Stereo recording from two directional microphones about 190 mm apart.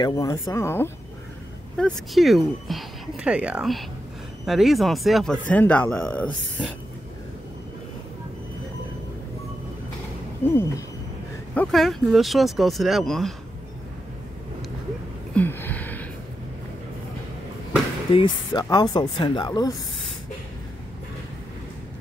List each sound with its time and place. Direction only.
0.0 s speech: 15° left (ahead or behind)
1.8 s speech: centre (ahead or behind)
10.4 s speech: 15° left (ahead or behind)
11.5 s speech: 5° left (ahead or behind)
15.3 s a sound: 10° left (ahead or behind)
18.1 s speech: 25° left (ahead or behind)